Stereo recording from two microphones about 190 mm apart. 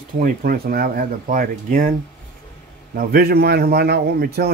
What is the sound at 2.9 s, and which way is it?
A man's voice, 50° right (ahead or behind).